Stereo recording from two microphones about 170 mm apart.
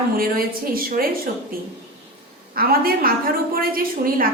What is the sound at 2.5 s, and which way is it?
A woman's voice, 60° right (ahead or behind).